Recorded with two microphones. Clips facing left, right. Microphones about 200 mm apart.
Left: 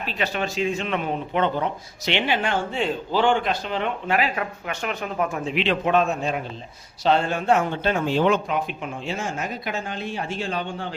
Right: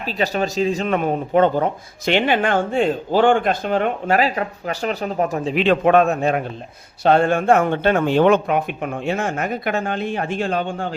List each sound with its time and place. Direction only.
0.0 s speech: 40° right (ahead or behind)